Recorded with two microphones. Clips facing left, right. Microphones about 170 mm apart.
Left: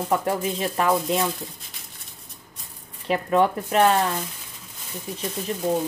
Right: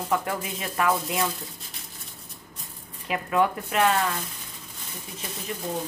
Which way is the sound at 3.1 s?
35° left (ahead or behind).